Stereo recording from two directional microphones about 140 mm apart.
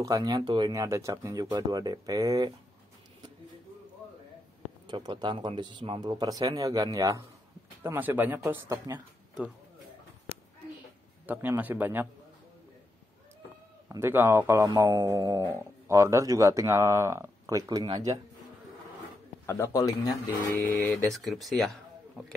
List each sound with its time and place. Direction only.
0.0 s speech: 25° right (ahead or behind)
4.8 s speech: 35° right (ahead or behind)
11.2 s speech: 10° right (ahead or behind)
13.8 s speech: 15° right (ahead or behind)
19.4 s speech: 20° left (ahead or behind)
21.1 s speech: centre (ahead or behind)